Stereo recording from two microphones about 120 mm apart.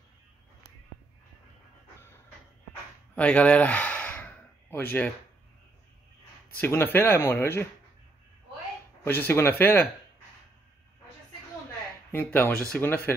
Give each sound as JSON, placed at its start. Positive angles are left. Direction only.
{"t": 3.2, "sound": "gasp", "side_deg": 10}
{"t": 6.5, "sound": "speech", "side_deg": 15}
{"t": 9.0, "sound": "speech", "side_deg": 15}
{"t": 12.1, "sound": "speech", "side_deg": 20}